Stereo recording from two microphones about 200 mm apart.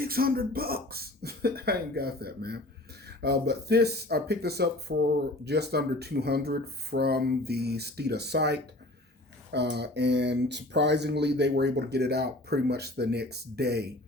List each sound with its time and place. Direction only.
0.0 s speech: 50° right (ahead or behind)